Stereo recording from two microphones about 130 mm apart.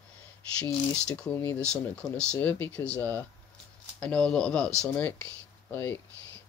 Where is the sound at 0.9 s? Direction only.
5° left (ahead or behind).